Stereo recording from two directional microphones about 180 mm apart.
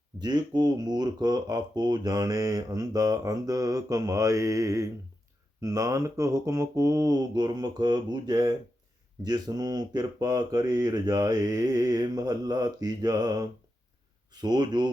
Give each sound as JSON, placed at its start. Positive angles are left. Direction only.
{"t": 0.2, "sound": "speech", "side_deg": -25}